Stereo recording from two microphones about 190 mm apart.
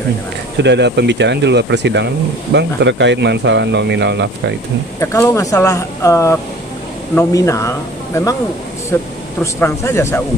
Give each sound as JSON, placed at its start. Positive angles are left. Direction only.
{"t": 0.6, "sound": "speech", "side_deg": -65}
{"t": 5.0, "sound": "speech", "side_deg": 15}